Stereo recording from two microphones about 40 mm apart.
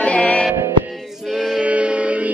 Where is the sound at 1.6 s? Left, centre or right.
Right.